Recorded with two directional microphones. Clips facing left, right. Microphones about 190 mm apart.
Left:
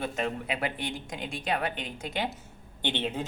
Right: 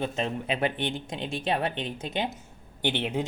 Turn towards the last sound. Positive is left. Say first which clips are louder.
# right 3 dB
turn(degrees=-10)  # may be behind; listen again after turning